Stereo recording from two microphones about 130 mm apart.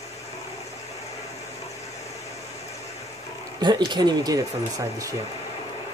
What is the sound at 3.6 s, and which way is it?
Speech, 35° right (ahead or behind).